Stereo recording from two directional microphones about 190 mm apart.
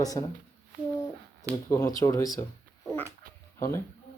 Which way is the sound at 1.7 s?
20° left (ahead or behind).